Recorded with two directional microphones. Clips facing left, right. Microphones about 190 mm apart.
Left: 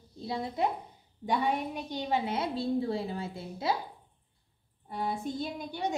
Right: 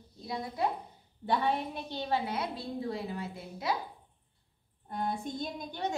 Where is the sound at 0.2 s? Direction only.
25° left (ahead or behind).